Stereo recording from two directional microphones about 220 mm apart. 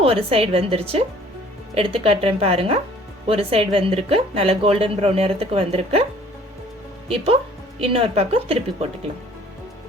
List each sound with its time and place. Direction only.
0.0 s a woman's voice: 25° right (ahead or behind)
7.8 s a woman's voice: 25° right (ahead or behind)